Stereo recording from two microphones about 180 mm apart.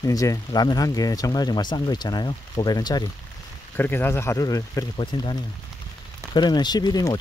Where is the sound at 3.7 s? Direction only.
10° left (ahead or behind).